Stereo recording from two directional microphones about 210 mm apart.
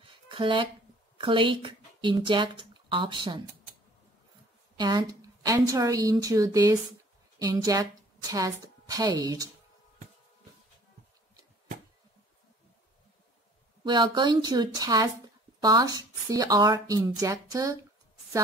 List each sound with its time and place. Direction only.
0.0 s a sound: 25° right (ahead or behind)
1.1 s speech: 25° right (ahead or behind)
4.7 s a woman's voice: 20° right (ahead or behind)
13.8 s a woman's voice: 20° right (ahead or behind)